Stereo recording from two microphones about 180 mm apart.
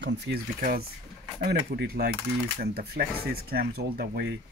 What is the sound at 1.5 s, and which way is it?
Speech, 60° right (ahead or behind).